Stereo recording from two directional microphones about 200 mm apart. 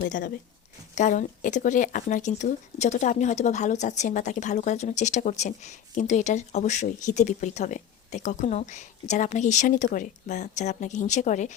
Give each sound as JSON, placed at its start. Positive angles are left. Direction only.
{"t": 0.0, "sound": "speech", "side_deg": 45}